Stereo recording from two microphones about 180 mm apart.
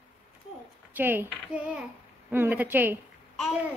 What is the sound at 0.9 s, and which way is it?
Speech, 10° right (ahead or behind).